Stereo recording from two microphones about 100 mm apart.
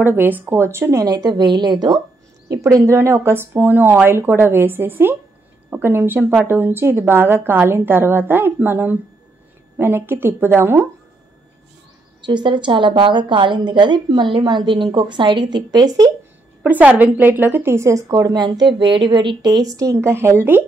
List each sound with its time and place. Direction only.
0.0 s speech: 20° right (ahead or behind)
0.9 s a woman's voice: 40° right (ahead or behind)
2.5 s speech: 30° right (ahead or behind)
12.3 s a woman's voice: 50° right (ahead or behind)
16.6 s a woman's voice: 15° right (ahead or behind)